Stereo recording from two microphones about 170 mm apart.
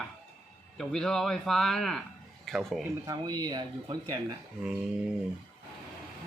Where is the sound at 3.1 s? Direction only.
20° right (ahead or behind).